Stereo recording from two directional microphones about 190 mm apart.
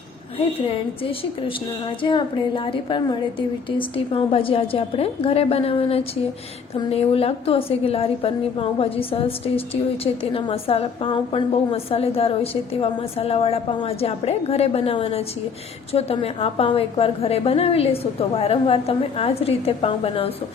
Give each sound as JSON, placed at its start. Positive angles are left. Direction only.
{"t": 0.6, "sound": "a woman's voice", "side_deg": 30}